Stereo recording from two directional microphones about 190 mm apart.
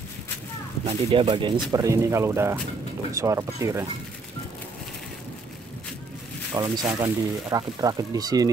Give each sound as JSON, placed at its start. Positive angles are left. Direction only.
{"t": 0.8, "sound": "speech", "side_deg": -30}
{"t": 6.5, "sound": "speech", "side_deg": -20}